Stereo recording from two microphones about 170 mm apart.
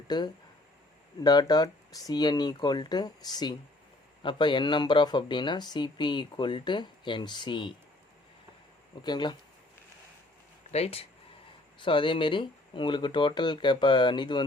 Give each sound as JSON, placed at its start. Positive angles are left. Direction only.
{"t": 0.1, "sound": "speech", "side_deg": 25}
{"t": 9.0, "sound": "speech", "side_deg": 25}
{"t": 10.7, "sound": "speech", "side_deg": 35}